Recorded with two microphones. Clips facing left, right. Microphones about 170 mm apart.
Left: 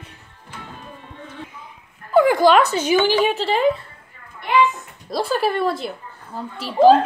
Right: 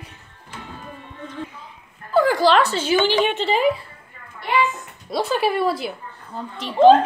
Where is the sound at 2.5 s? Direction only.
15° left (ahead or behind).